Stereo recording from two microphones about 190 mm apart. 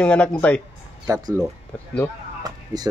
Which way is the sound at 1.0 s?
15° right (ahead or behind).